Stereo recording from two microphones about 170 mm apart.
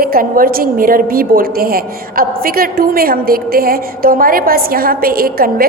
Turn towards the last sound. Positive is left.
turn(degrees=-60)  # may be behind; listen again after turning